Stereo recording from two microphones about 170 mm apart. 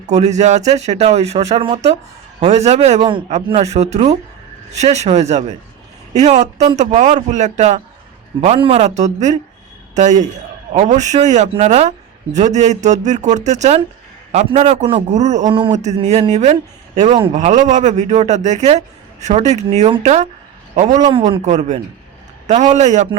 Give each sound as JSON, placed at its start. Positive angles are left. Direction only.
{"t": 0.1, "sound": "speech", "side_deg": -40}
{"t": 3.3, "sound": "speech", "side_deg": -40}
{"t": 8.4, "sound": "speech", "side_deg": -30}
{"t": 20.9, "sound": "a man's voice", "side_deg": -25}
{"t": 21.4, "sound": "speech", "side_deg": -45}